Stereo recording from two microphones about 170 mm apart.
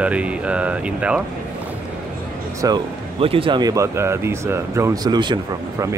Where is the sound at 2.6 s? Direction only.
30° right (ahead or behind).